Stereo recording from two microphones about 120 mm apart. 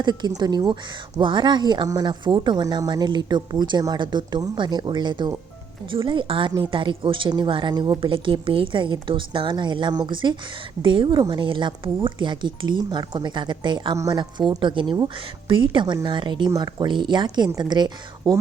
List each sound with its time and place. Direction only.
0.0 s a woman's voice: 35° right (ahead or behind)